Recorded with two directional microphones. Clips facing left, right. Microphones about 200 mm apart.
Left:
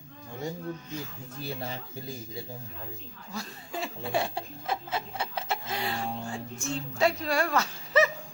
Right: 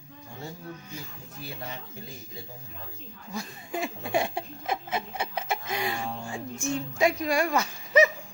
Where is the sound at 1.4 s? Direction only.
30° left (ahead or behind).